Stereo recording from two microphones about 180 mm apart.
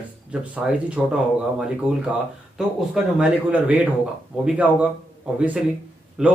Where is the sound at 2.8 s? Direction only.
5° right (ahead or behind).